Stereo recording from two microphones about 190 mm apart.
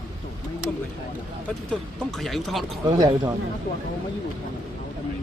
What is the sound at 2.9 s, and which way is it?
Speech, 20° right (ahead or behind).